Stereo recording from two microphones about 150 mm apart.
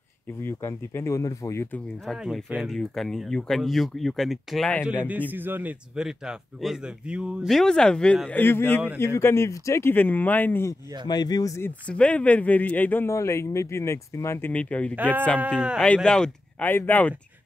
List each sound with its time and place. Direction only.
0.4 s a man's voice: 15° left (ahead or behind)
2.0 s a man's voice: centre (ahead or behind); by 11.7 s 20° left (ahead or behind)
11.9 s a man's voice: 10° left (ahead or behind)
15.0 s a man's voice: 10° right (ahead or behind)
15.8 s a man's voice: 5° left (ahead or behind)